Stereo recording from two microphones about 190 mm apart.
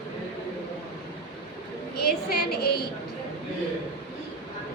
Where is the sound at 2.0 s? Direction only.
55° left (ahead or behind).